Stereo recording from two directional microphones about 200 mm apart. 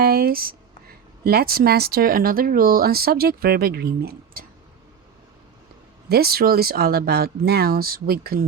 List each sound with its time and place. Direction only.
0.0 s speech: 50° right (ahead or behind)
6.1 s speech: 50° right (ahead or behind)